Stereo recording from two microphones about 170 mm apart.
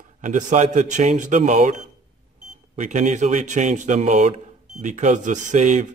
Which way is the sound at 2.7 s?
45° right (ahead or behind).